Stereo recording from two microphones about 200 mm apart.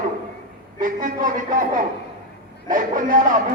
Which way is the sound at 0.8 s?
40° right (ahead or behind).